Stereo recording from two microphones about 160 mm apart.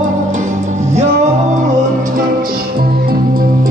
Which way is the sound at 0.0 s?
50° right (ahead or behind).